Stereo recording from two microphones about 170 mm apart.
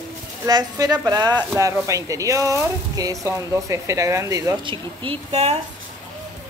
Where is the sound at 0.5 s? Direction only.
25° right (ahead or behind).